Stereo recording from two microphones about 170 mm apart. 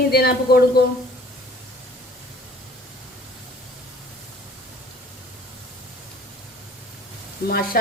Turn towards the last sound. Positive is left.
turn(degrees=60)  # may be behind; listen again after turning